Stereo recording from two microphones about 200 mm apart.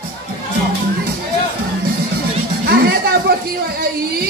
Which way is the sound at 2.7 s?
50° right (ahead or behind).